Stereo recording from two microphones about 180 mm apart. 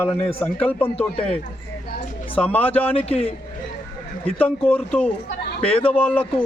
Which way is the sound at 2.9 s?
35° left (ahead or behind).